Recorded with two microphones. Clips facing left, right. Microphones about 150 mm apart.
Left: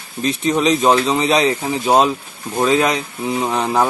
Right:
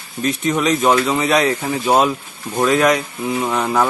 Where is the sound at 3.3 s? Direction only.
15° left (ahead or behind).